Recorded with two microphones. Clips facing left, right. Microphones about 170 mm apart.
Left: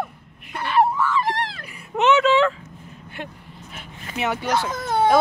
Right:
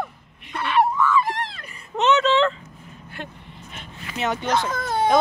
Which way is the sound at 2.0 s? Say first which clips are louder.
Left 2 dB; 10° left (ahead or behind).